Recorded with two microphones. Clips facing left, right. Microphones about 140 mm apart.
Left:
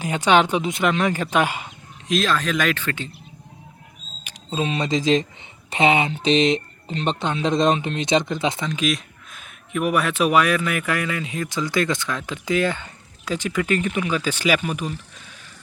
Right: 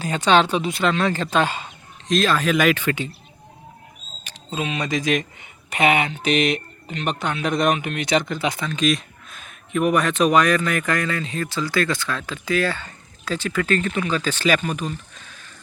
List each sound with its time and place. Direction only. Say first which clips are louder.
0.0 s speech: even; 15° left (ahead or behind)
2.0 s speech: right 2 dB; centre (ahead or behind)
4.5 s speech: left 2 dB; 30° left (ahead or behind)
8.7 s speech: right 2 dB; 5° left (ahead or behind)